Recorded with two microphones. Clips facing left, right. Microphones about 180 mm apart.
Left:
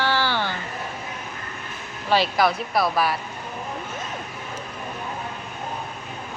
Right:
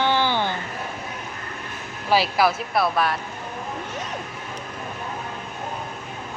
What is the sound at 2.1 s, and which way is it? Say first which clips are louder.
Speech: even; 5° right (ahead or behind).